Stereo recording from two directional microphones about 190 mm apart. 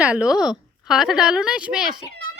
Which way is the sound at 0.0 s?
5° right (ahead or behind).